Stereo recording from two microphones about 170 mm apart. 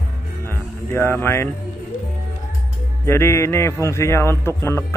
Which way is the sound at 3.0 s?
15° left (ahead or behind).